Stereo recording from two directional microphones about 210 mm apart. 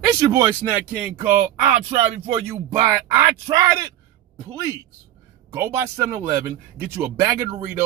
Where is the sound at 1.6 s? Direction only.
10° right (ahead or behind).